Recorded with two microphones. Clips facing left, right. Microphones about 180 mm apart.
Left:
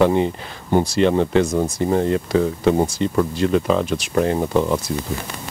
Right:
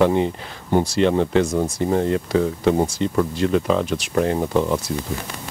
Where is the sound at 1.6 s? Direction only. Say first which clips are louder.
Left 1 dB; 20° left (ahead or behind).